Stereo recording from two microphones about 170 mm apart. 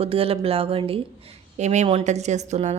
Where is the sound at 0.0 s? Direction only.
35° right (ahead or behind).